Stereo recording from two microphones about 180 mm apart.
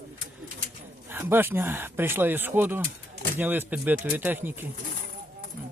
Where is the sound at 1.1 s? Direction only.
10° right (ahead or behind).